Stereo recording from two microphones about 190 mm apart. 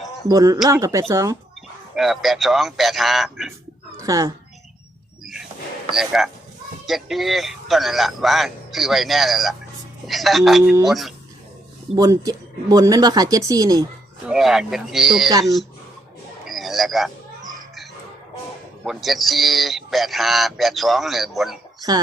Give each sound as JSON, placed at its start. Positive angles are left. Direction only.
{"t": 0.3, "sound": "speech", "side_deg": -20}
{"t": 2.0, "sound": "speech", "side_deg": 0}
{"t": 3.9, "sound": "a sound", "side_deg": -20}
{"t": 5.9, "sound": "speech", "side_deg": 0}
{"t": 10.6, "sound": "speech", "side_deg": -15}
{"t": 10.8, "sound": "speech", "side_deg": 0}
{"t": 11.9, "sound": "speech", "side_deg": -20}
{"t": 14.3, "sound": "speech", "side_deg": 0}
{"t": 16.5, "sound": "a sound", "side_deg": 0}
{"t": 18.9, "sound": "speech", "side_deg": 0}
{"t": 21.8, "sound": "speech", "side_deg": -20}